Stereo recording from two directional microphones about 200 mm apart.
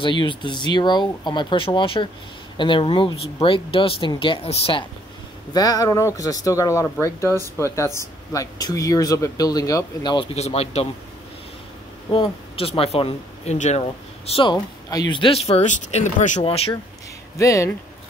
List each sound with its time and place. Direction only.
0.0 s speech: 25° left (ahead or behind)
12.1 s speech: 25° left (ahead or behind)
17.4 s speech: 15° left (ahead or behind)